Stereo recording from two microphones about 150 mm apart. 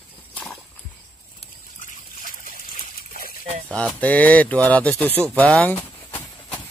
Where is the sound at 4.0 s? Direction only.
10° left (ahead or behind).